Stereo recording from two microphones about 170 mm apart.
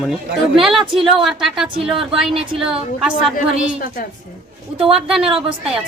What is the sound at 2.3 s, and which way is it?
Speech, 35° right (ahead or behind).